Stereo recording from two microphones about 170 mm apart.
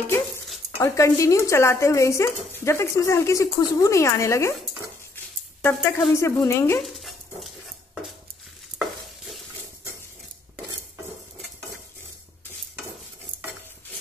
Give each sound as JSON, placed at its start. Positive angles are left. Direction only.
{"t": 0.7, "sound": "speech", "side_deg": 15}
{"t": 6.8, "sound": "dog", "side_deg": 0}